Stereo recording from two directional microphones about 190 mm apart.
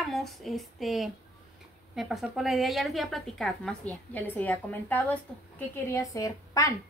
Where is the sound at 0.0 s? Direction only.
Centre (ahead or behind).